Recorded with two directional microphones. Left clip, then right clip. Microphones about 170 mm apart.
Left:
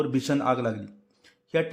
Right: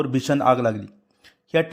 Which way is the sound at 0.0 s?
25° right (ahead or behind).